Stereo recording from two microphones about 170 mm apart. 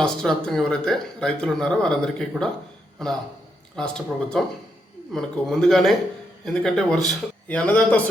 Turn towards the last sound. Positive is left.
turn(degrees=10)  # may be behind; listen again after turning